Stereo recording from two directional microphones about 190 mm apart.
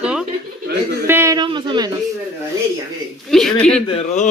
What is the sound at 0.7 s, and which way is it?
Bird, 55° right (ahead or behind).